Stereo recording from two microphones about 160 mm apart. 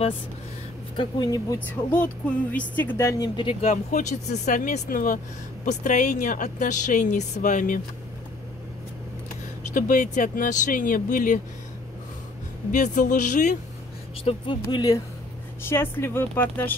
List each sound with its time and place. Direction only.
0.9 s speech: 25° left (ahead or behind)
1.7 s speech: 10° left (ahead or behind)
3.3 s speech: 30° left (ahead or behind)
3.9 s a woman's voice: 45° left (ahead or behind)
9.8 s speech: 55° left (ahead or behind)
12.7 s a woman's voice: 50° left (ahead or behind)
14.2 s speech: 30° left (ahead or behind)
15.6 s speech: 15° left (ahead or behind)